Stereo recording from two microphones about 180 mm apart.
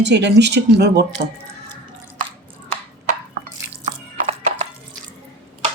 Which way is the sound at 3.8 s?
40° right (ahead or behind).